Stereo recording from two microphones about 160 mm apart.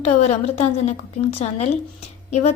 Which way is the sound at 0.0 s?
40° left (ahead or behind).